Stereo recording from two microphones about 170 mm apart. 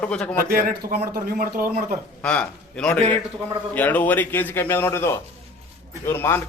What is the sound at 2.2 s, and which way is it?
A man's voice, 5° left (ahead or behind).